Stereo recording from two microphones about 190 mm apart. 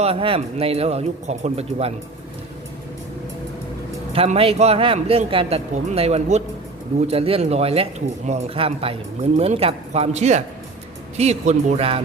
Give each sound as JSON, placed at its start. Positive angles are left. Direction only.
{"t": 0.0, "sound": "speech", "side_deg": -30}
{"t": 4.1, "sound": "speech", "side_deg": -30}